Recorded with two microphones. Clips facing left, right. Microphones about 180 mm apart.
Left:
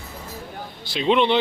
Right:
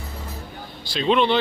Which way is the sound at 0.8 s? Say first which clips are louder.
Even; 20° left (ahead or behind).